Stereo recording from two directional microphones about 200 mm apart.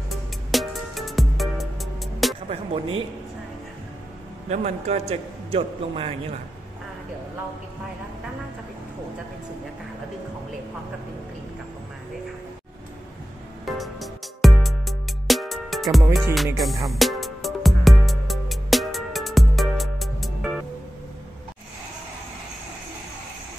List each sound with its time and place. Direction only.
0.1 s music: centre (ahead or behind)
2.7 s a man's voice: 25° right (ahead or behind)
4.5 s a man's voice: 35° right (ahead or behind)
13.7 s music: centre (ahead or behind)